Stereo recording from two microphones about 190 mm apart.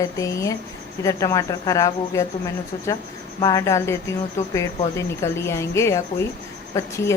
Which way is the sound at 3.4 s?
20° left (ahead or behind).